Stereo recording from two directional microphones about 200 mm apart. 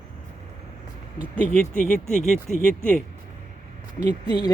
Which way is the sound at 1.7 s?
40° left (ahead or behind).